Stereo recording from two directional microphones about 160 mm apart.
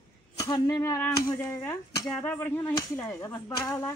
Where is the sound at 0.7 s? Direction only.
15° left (ahead or behind).